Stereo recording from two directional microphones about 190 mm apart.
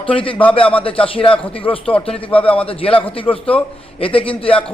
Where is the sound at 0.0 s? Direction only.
30° left (ahead or behind).